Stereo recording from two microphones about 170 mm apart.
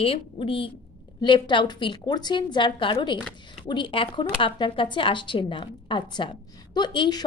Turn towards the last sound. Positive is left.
turn(degrees=25)  # may be behind; listen again after turning